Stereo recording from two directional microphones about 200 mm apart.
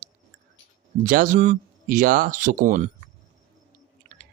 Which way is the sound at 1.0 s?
40° right (ahead or behind).